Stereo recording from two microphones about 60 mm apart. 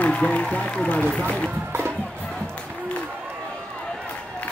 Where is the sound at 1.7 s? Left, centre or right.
Right.